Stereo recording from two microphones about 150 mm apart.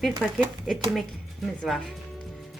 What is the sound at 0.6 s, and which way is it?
A woman's voice, centre (ahead or behind).